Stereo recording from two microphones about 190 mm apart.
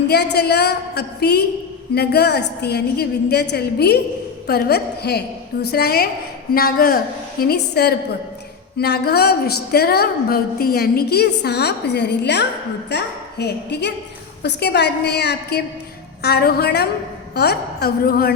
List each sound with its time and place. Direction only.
0.1 s a woman's voice: 60° left (ahead or behind)